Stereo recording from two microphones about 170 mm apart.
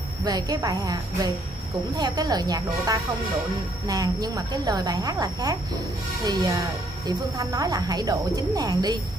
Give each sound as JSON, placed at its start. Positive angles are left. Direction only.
{"t": 0.2, "sound": "speech", "side_deg": -25}